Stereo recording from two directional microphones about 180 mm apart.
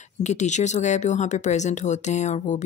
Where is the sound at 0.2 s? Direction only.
40° left (ahead or behind).